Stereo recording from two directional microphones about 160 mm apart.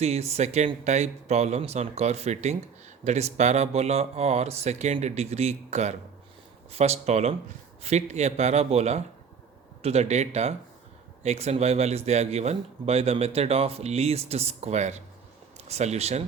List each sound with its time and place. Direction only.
0.0 s a man's voice: 40° right (ahead or behind)